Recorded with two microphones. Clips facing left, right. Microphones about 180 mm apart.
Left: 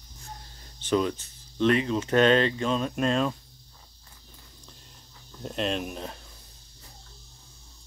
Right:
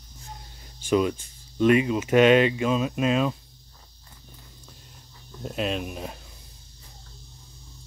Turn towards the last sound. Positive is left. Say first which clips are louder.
# right 1 dB
turn(degrees=-10)  # may be behind; listen again after turning